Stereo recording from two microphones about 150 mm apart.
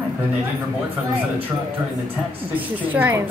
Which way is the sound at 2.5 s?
10° right (ahead or behind).